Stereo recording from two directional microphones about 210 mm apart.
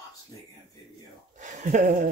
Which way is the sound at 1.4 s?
35° right (ahead or behind).